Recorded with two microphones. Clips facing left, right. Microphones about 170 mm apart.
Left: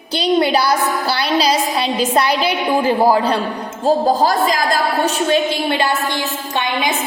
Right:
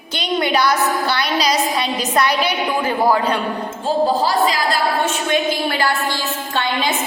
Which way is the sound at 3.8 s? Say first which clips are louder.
Left 3 dB; 45° left (ahead or behind).